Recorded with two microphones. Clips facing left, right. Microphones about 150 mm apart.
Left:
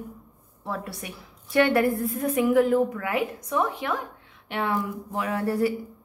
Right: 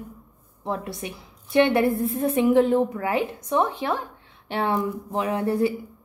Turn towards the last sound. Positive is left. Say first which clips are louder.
# right 2 dB
turn(degrees=-20)  # may be behind; listen again after turning